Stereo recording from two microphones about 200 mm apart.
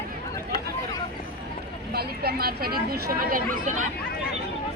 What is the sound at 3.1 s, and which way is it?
Chatter, 45° right (ahead or behind).